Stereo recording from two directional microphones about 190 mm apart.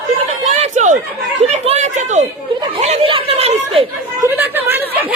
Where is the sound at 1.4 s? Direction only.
35° right (ahead or behind).